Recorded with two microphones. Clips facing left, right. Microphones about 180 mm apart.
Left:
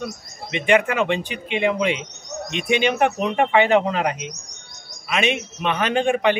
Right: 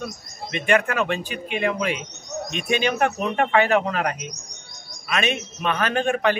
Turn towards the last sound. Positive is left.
turn(degrees=15)  # may be behind; listen again after turning